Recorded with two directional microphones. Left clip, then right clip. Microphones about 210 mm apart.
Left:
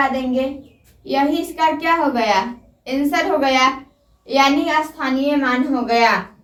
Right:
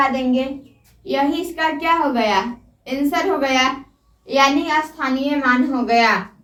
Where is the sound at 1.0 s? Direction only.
20° right (ahead or behind).